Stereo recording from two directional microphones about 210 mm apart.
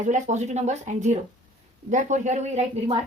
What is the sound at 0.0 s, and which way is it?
Speech, 35° right (ahead or behind).